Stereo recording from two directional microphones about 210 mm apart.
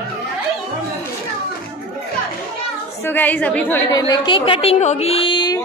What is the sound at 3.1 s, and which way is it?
Speech, 10° left (ahead or behind).